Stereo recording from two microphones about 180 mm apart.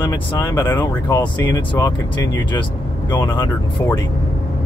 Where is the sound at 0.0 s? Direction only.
25° left (ahead or behind).